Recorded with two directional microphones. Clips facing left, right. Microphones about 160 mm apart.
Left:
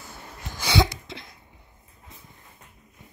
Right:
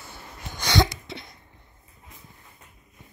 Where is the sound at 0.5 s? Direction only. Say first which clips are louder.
Even; 5° left (ahead or behind).